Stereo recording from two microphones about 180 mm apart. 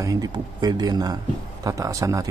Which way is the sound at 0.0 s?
20° right (ahead or behind).